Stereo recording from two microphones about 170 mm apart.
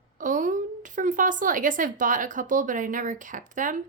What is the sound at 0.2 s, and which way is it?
A woman's voice, 50° right (ahead or behind).